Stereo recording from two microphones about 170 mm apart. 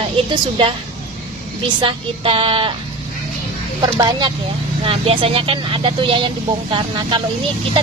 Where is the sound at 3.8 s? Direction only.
25° right (ahead or behind).